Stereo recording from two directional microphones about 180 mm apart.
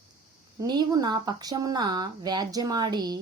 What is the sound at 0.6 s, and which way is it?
Speech, 20° right (ahead or behind).